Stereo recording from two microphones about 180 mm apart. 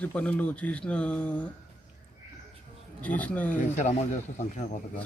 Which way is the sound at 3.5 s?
40° left (ahead or behind).